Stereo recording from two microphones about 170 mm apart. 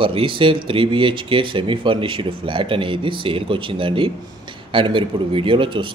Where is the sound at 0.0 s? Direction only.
30° right (ahead or behind).